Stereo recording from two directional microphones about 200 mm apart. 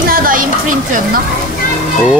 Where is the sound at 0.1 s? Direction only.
45° right (ahead or behind).